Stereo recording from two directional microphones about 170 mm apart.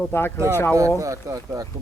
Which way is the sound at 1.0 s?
20° right (ahead or behind).